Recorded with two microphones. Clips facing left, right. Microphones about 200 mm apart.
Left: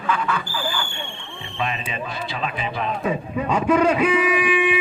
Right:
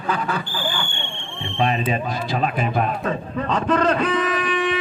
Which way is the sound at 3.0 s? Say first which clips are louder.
Left 1 dB; 10° left (ahead or behind).